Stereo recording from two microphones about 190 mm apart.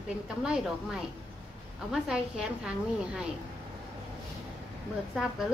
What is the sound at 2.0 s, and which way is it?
Speech, 5° right (ahead or behind).